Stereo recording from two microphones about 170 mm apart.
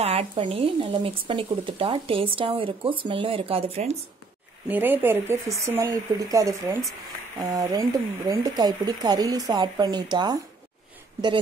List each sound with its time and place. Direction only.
0.0 s speech: 35° right (ahead or behind)
4.6 s speech: 10° right (ahead or behind)